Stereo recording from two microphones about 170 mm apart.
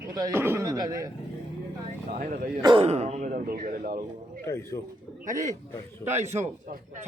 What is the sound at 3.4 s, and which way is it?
Speech, 60° right (ahead or behind).